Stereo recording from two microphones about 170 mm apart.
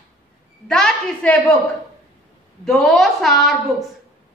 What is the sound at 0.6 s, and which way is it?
Speech, 5° left (ahead or behind).